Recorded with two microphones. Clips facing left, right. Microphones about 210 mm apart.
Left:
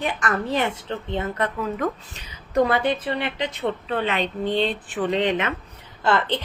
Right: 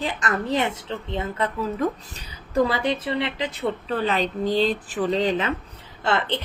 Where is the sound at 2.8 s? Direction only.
25° right (ahead or behind).